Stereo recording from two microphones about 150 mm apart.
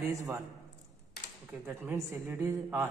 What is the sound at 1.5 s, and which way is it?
A woman's voice, 15° right (ahead or behind).